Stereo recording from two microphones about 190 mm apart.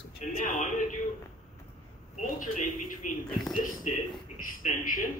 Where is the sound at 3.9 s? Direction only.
40° left (ahead or behind).